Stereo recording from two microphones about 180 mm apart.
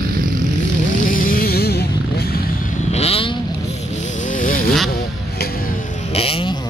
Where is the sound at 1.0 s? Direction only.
50° left (ahead or behind).